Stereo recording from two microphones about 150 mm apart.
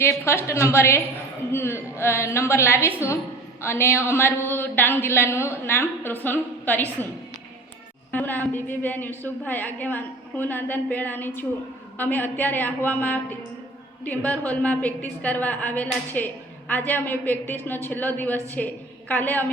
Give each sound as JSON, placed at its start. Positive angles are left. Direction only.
{"t": 0.4, "sound": "a woman's voice", "side_deg": 20}
{"t": 2.8, "sound": "a woman's voice", "side_deg": -10}
{"t": 3.6, "sound": "a woman's voice", "side_deg": 15}
{"t": 8.1, "sound": "a woman's voice", "side_deg": 10}